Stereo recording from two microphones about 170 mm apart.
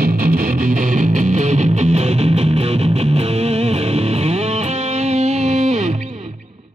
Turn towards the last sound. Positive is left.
turn(degrees=-40)  # may be behind; listen again after turning